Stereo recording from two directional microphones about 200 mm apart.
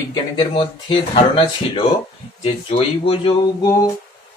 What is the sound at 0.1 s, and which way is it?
Speech, 20° left (ahead or behind).